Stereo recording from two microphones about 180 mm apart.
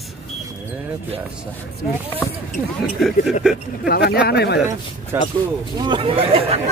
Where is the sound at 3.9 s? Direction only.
60° left (ahead or behind).